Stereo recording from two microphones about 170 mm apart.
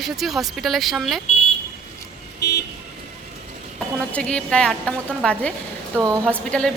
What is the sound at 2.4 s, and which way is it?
Vehicle, 80° left.